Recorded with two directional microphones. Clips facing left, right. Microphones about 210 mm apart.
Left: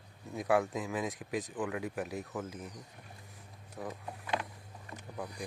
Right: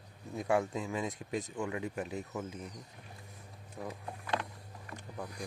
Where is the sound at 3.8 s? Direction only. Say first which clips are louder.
Left 1 dB; 5° right (ahead or behind).